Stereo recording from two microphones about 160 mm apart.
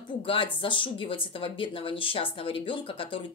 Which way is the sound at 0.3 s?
35° left (ahead or behind).